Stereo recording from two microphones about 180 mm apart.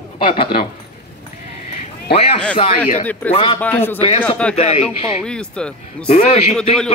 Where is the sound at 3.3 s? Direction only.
30° left (ahead or behind).